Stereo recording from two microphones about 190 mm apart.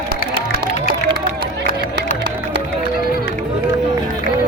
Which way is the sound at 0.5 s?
55° right (ahead or behind).